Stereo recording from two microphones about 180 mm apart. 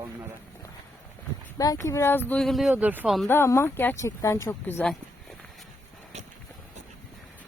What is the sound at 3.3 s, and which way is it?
Speech, 15° left (ahead or behind).